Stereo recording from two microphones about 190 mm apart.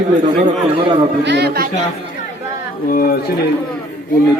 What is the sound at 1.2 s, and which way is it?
Speech, 60° right (ahead or behind).